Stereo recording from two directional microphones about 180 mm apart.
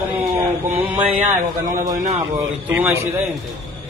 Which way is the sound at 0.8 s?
25° right (ahead or behind).